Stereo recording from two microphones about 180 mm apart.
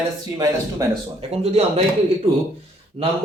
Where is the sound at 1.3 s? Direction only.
35° right (ahead or behind).